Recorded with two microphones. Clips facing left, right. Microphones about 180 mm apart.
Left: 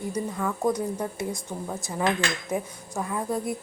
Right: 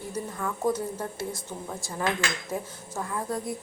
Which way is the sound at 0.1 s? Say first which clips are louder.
Left 2 dB; 10° left (ahead or behind).